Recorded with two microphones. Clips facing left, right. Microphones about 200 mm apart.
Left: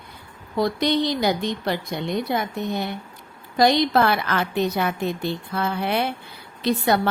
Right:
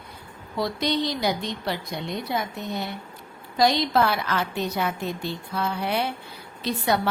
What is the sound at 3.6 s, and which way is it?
A woman's voice, 60° left (ahead or behind).